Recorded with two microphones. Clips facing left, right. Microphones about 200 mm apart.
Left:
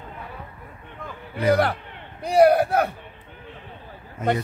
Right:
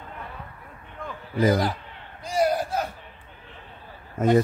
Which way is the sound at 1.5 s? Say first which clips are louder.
Left 8 dB; 65° left (ahead or behind).